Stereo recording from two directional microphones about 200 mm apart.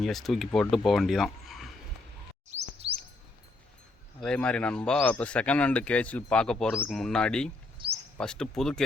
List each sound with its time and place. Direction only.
0.0 s speech: centre (ahead or behind)
2.5 s chirp: 35° right (ahead or behind)
4.2 s speech: 5° left (ahead or behind)
7.8 s a sound: 25° right (ahead or behind)
8.2 s speech: 5° left (ahead or behind)